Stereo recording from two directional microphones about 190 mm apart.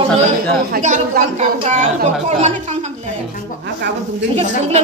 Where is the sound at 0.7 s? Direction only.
45° right (ahead or behind).